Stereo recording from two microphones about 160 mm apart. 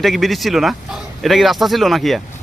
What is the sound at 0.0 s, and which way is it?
Speech, centre (ahead or behind).